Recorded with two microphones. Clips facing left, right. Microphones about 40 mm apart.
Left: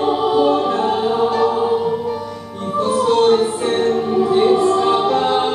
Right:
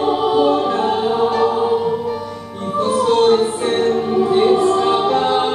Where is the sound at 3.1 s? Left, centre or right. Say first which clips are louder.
Even; centre.